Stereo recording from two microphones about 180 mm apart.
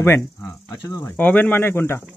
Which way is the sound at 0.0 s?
10° left (ahead or behind).